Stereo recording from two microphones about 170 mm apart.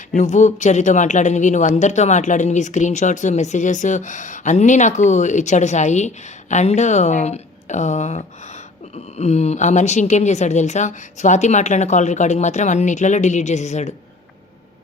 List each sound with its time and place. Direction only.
0.2 s speech: 45° left (ahead or behind)